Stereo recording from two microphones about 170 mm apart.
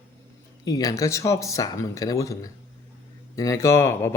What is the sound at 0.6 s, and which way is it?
Speech, 20° left (ahead or behind).